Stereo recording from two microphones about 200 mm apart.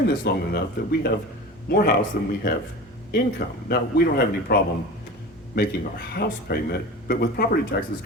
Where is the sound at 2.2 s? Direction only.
55° left (ahead or behind).